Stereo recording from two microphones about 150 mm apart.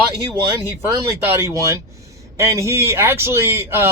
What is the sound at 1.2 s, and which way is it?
Speech, 20° right (ahead or behind).